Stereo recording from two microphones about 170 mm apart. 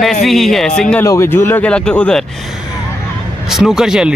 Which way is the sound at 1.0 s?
15° left (ahead or behind).